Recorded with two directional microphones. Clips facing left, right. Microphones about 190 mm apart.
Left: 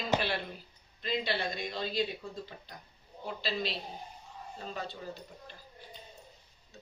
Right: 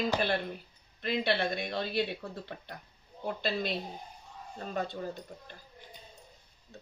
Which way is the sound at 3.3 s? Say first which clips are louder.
Right 3 dB; 50° right (ahead or behind).